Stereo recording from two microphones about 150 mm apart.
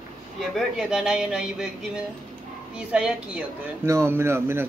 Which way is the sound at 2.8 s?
5° right (ahead or behind).